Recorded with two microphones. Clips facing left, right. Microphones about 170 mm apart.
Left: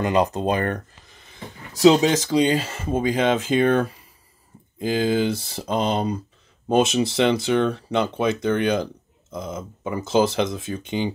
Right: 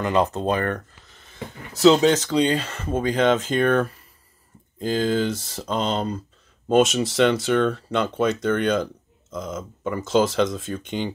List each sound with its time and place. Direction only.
0.0 s speech: 15° left (ahead or behind)